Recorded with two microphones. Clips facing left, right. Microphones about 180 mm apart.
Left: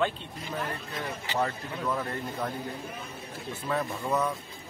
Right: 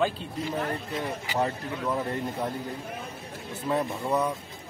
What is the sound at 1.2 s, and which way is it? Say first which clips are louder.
Speech: left 1 dB; 15° right (ahead or behind).